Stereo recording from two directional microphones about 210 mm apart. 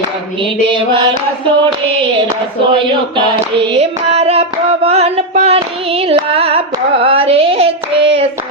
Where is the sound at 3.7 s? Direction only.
30° right (ahead or behind).